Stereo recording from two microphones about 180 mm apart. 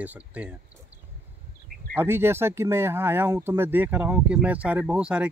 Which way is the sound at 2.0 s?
15° right (ahead or behind).